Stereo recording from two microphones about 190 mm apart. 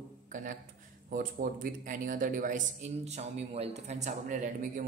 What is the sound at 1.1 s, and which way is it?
A man's voice, 45° right (ahead or behind).